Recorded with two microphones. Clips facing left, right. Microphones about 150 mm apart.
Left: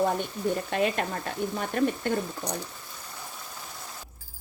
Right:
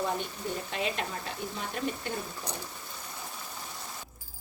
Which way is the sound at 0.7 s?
55° left (ahead or behind).